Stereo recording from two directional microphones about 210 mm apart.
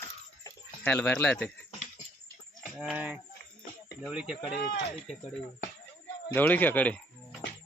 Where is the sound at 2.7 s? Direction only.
5° right (ahead or behind).